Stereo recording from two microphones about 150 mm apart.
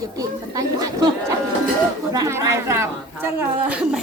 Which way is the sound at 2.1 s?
20° right (ahead or behind).